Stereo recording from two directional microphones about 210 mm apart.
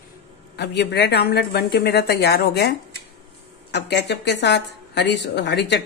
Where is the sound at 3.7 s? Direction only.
50° left (ahead or behind).